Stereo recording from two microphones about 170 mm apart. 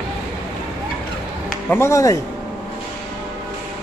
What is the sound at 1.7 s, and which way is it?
Speech, 15° left (ahead or behind).